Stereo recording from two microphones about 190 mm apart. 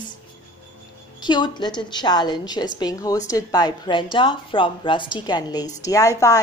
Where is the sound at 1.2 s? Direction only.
25° left (ahead or behind).